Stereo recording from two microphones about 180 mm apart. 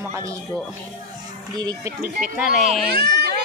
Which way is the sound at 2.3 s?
5° right (ahead or behind).